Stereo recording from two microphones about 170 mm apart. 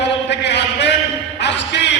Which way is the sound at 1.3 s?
90° left.